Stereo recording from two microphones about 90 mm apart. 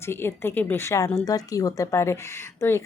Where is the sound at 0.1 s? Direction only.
25° left (ahead or behind).